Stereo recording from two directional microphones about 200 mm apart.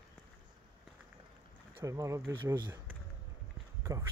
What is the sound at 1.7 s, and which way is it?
Speech, 15° right (ahead or behind).